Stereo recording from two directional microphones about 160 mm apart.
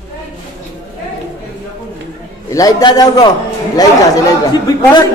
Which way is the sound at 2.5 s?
25° left (ahead or behind).